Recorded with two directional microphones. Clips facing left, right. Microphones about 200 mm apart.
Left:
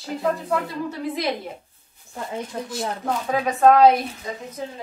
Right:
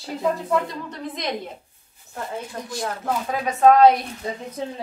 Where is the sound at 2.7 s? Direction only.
Centre (ahead or behind).